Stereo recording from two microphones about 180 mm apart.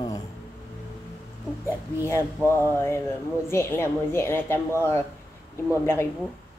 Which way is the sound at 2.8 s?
15° left (ahead or behind).